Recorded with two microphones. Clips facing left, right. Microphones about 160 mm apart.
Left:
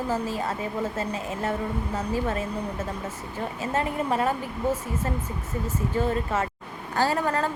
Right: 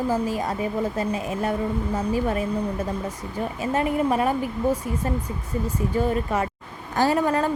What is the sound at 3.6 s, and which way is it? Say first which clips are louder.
Speech: right 5 dB; 15° right (ahead or behind).